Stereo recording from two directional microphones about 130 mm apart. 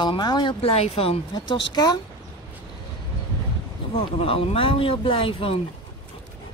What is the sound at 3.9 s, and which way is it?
Speech, 45° left (ahead or behind).